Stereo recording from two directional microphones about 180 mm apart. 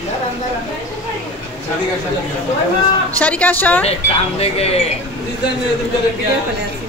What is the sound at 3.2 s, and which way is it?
Speech, 10° left (ahead or behind).